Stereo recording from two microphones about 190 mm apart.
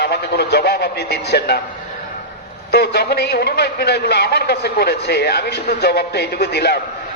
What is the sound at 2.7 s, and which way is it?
A man's voice, 55° left (ahead or behind).